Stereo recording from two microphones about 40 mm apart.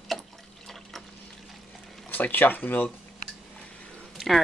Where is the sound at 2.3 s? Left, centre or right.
Left.